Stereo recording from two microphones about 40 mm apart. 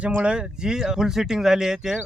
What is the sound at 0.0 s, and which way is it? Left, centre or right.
Speech, right.